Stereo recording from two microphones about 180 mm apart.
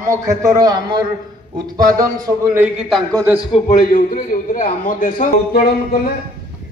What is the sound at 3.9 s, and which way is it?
A man's voice, 50° left (ahead or behind).